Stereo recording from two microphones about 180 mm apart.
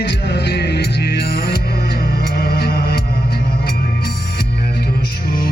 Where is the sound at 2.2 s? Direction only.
60° left (ahead or behind).